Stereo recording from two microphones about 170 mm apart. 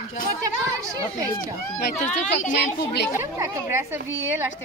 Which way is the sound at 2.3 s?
45° left (ahead or behind).